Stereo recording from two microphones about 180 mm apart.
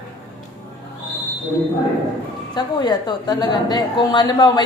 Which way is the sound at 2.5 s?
25° left (ahead or behind).